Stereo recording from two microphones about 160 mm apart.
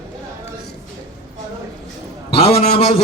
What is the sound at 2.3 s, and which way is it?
Speech, 35° left (ahead or behind).